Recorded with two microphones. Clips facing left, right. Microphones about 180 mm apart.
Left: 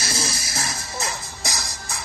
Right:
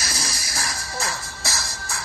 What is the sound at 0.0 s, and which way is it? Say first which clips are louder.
Music: left 3 dB; 25° left (ahead or behind).